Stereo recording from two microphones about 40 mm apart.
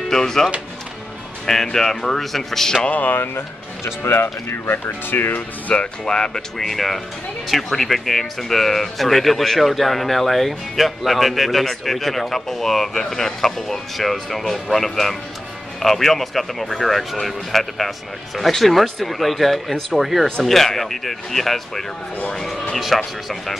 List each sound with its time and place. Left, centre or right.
0.1 s speech: centre
2.9 s speech: left
4.0 s speech: left
5.7 s speech: left
6.6 s speech: centre
20.4 s speech: centre